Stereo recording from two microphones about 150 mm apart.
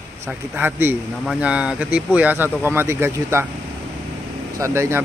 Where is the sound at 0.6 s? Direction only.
15° right (ahead or behind).